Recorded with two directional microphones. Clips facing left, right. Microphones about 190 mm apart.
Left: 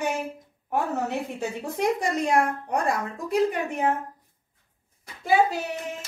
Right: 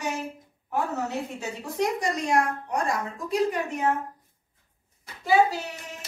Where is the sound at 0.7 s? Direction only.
55° left (ahead or behind).